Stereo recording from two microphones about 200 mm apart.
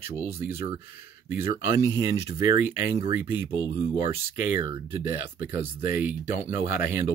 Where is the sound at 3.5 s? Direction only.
25° right (ahead or behind).